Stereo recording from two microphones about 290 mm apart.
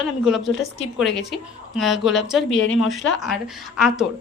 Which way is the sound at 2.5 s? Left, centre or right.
Left.